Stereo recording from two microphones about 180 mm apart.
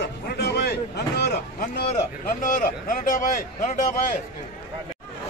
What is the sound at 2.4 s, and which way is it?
Speech, 45° left (ahead or behind).